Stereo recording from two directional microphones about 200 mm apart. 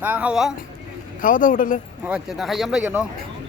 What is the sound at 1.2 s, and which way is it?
Speech, 40° left (ahead or behind).